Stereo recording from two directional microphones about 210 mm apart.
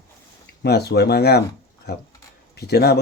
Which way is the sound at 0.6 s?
50° left (ahead or behind).